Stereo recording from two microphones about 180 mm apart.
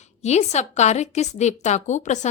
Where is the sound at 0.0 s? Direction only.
40° left (ahead or behind).